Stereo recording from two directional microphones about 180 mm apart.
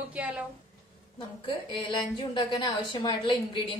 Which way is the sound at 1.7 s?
30° left (ahead or behind).